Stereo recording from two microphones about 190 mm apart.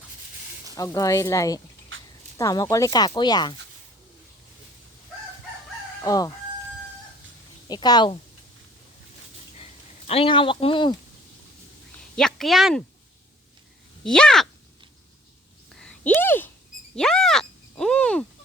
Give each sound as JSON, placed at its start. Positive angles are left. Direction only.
{"t": 0.8, "sound": "speech", "side_deg": 15}
{"t": 1.9, "sound": "fowl", "side_deg": -90}
{"t": 2.4, "sound": "speech", "side_deg": 20}
{"t": 6.0, "sound": "crowing", "side_deg": 20}
{"t": 7.7, "sound": "speech", "side_deg": 20}
{"t": 10.1, "sound": "speech", "side_deg": 30}
{"t": 12.1, "sound": "speech", "side_deg": 0}
{"t": 14.0, "sound": "speech", "side_deg": 5}
{"t": 15.7, "sound": "a sound", "side_deg": 5}